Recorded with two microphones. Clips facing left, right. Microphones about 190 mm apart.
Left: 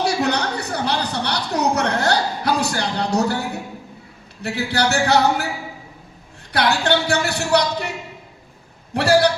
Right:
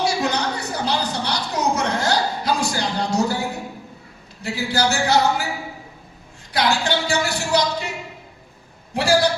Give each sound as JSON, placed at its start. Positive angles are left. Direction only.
{"t": 0.0, "sound": "a sound", "side_deg": 65}
{"t": 4.4, "sound": "speech", "side_deg": 65}
{"t": 6.5, "sound": "speech", "side_deg": 65}
{"t": 8.9, "sound": "speech", "side_deg": 65}